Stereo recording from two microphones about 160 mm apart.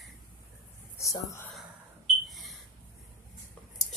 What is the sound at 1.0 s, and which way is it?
Speech, 20° left (ahead or behind).